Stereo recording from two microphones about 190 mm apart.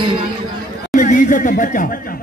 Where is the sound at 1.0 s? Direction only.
45° left (ahead or behind).